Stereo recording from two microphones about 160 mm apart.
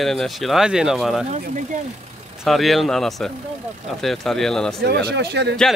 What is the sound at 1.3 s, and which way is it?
Speech, 50° right (ahead or behind).